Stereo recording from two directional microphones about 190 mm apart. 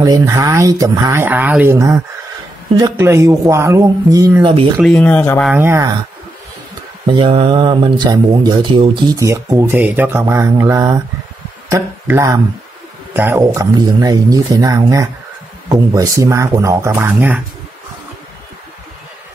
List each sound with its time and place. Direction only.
0.0 s speech: 20° right (ahead or behind)
4.8 s speech: 10° left (ahead or behind)
5.5 s speech: 10° right (ahead or behind)
7.2 s speech: 25° right (ahead or behind); by 17.4 s 10° right (ahead or behind)